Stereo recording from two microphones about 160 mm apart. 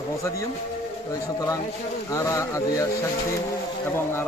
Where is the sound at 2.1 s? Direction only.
20° left (ahead or behind).